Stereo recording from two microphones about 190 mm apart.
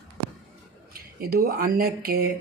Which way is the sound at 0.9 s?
50° right (ahead or behind).